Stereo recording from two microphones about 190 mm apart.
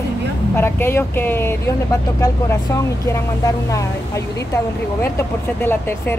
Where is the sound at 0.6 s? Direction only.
10° left (ahead or behind).